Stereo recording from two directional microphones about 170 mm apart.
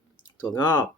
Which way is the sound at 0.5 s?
25° left (ahead or behind).